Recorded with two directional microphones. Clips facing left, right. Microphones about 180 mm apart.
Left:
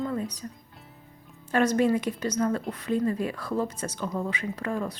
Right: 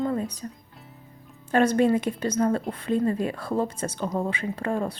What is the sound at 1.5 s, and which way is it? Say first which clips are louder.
A woman's voice: right 2 dB; 30° right (ahead or behind).